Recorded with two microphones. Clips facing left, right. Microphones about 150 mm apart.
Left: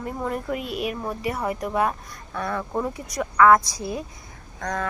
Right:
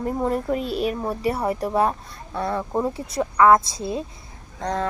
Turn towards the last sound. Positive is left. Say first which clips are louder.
# right 3 dB
turn(degrees=-25)  # may be behind; listen again after turning